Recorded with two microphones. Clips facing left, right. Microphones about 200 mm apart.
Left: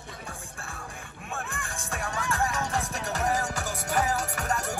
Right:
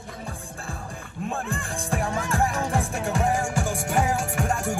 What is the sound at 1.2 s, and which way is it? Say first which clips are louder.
Music: right 7 dB; 30° right (ahead or behind).